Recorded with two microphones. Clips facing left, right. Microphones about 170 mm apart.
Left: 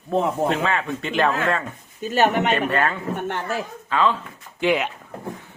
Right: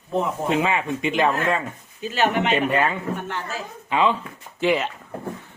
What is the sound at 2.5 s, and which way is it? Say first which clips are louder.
Speech: right 1 dB; 10° right (ahead or behind).